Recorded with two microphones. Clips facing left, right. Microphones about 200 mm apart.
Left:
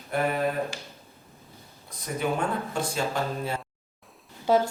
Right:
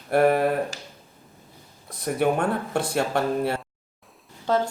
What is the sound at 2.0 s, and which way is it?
Speech, 60° right (ahead or behind).